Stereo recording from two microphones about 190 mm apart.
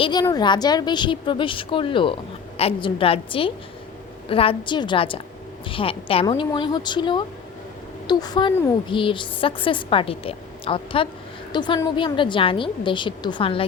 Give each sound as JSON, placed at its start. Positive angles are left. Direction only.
{"t": 0.0, "sound": "a woman's voice", "side_deg": 20}